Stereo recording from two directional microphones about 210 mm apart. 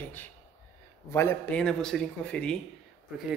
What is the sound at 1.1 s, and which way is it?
A man's voice, 10° left (ahead or behind).